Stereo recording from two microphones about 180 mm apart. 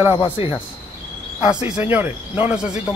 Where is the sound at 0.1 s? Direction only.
30° left (ahead or behind).